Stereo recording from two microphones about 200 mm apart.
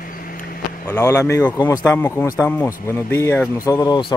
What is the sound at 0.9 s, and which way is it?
Speech, 15° left (ahead or behind).